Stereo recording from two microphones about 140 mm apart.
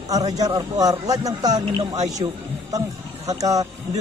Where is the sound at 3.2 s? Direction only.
25° right (ahead or behind).